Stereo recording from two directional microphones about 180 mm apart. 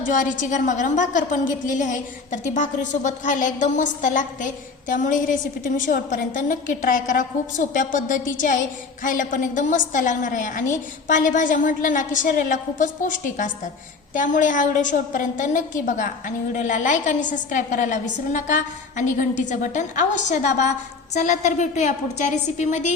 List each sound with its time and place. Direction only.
0.0 s a woman's voice: 45° left (ahead or behind)